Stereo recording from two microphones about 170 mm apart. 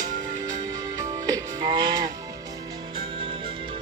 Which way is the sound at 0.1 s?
45° right (ahead or behind).